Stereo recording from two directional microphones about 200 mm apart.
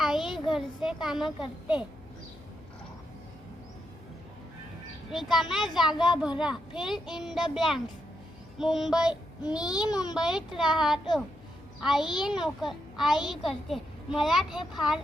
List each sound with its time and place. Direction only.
0.0 s a sound: centre (ahead or behind)
0.5 s a child's voice: 5° right (ahead or behind)
5.1 s a child's voice: centre (ahead or behind)
9.9 s a child's voice: 20° left (ahead or behind)
10.2 s a child's voice: centre (ahead or behind)